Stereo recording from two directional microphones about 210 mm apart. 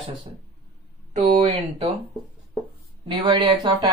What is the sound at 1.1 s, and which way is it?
Speech, 30° right (ahead or behind).